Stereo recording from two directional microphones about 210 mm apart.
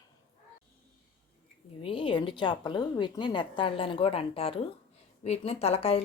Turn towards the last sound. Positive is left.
turn(degrees=30)  # may be behind; listen again after turning